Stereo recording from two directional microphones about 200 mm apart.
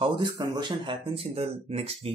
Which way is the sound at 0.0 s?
25° right (ahead or behind).